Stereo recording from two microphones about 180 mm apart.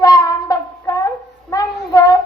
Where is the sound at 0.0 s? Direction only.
20° left (ahead or behind).